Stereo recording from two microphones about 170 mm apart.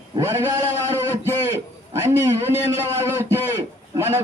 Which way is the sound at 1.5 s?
15° right (ahead or behind).